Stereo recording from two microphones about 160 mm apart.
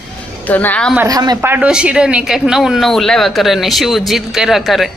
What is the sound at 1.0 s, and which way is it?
Speech, 25° right (ahead or behind).